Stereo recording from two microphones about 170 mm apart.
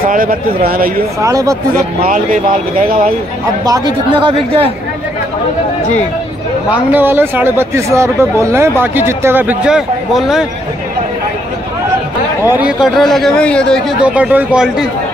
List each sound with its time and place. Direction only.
0.0 s speech: 55° right (ahead or behind)
1.2 s speech: 20° right (ahead or behind)
2.0 s speech: 50° right (ahead or behind)
3.6 s speech: 25° right (ahead or behind)
6.7 s speech: 10° right (ahead or behind)
12.4 s a man's voice: 10° right (ahead or behind)
14.0 s speech: 10° right (ahead or behind)